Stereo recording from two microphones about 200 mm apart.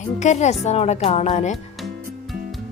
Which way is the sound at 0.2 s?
35° left (ahead or behind).